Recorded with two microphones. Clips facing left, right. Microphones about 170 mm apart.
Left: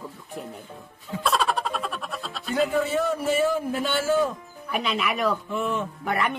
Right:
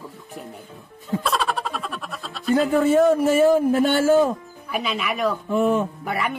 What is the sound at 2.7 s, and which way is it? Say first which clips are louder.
A man's voice: right 8 dB; 45° right (ahead or behind).